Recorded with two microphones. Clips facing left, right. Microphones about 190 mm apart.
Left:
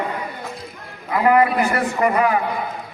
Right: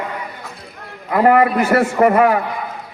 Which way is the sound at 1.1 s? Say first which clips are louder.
Right 3 dB; 50° right (ahead or behind).